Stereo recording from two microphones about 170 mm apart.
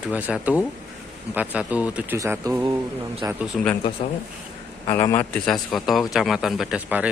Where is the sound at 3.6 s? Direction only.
5° left (ahead or behind).